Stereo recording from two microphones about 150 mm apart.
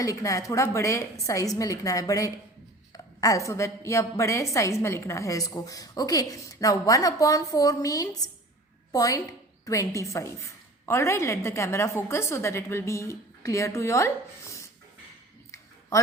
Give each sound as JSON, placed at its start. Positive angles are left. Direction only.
{"t": 0.0, "sound": "a woman's voice", "side_deg": 20}